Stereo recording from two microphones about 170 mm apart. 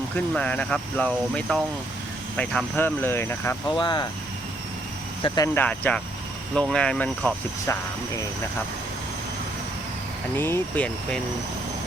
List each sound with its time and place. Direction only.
0.3 s speech: 5° left (ahead or behind)
3.7 s speech: 25° left (ahead or behind)
5.2 s speech: 25° left (ahead or behind)
5.5 s speech: 10° left (ahead or behind)
10.3 s speech: 10° left (ahead or behind)